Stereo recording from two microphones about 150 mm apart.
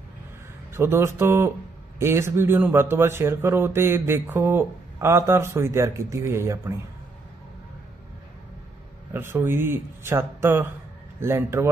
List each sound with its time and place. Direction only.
0.7 s speech: 15° right (ahead or behind)
9.1 s speech: 15° right (ahead or behind)